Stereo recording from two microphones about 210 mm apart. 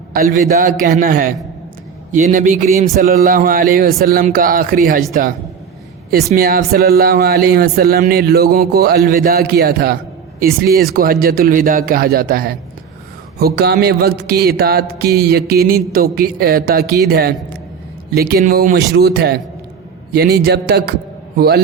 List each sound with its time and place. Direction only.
0.1 s a man's voice: 45° right (ahead or behind)
6.3 s a man's voice: 45° right (ahead or behind)